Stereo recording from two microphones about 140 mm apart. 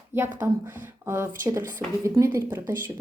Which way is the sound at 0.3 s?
15° right (ahead or behind).